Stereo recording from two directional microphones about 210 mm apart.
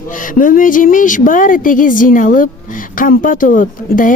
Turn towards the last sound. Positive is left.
turn(degrees=40)  # may be behind; listen again after turning